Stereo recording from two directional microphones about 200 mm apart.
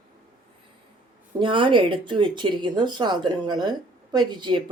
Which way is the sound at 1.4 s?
25° right (ahead or behind).